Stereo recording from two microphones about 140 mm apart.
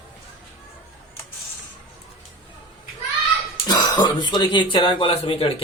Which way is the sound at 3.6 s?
30° left (ahead or behind).